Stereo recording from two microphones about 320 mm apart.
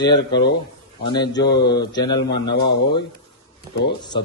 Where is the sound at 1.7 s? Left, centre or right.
Centre.